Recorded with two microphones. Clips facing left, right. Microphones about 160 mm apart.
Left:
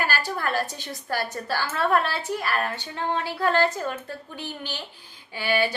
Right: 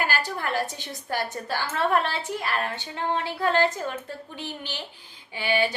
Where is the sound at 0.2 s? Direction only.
20° right (ahead or behind).